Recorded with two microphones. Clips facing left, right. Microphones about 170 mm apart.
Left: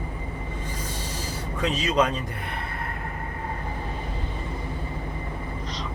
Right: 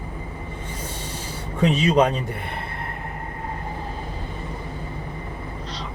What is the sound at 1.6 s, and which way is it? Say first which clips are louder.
Speech: right 5 dB; 30° right (ahead or behind).